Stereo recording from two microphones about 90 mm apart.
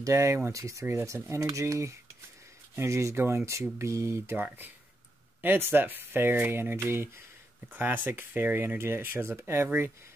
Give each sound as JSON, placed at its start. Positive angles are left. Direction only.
{"t": 0.0, "sound": "speech", "side_deg": -35}
{"t": 5.4, "sound": "speech", "side_deg": -25}